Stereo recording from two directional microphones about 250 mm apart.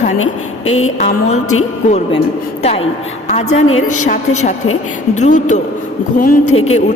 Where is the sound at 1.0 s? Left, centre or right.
Left.